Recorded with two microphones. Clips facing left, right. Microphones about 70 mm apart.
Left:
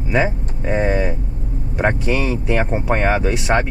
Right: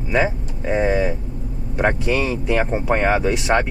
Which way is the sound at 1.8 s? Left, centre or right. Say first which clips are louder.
Even; centre.